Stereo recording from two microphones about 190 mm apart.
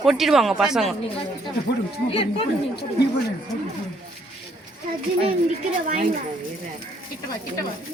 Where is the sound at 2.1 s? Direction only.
30° left (ahead or behind).